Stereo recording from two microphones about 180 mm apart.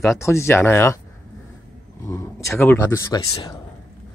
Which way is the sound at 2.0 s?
15° left (ahead or behind).